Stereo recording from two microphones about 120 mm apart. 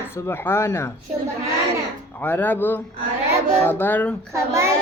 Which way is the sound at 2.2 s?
15° left (ahead or behind).